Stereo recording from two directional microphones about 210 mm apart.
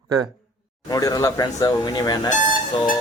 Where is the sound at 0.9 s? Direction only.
15° left (ahead or behind).